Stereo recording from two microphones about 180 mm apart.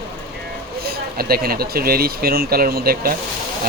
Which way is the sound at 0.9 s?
55° right (ahead or behind).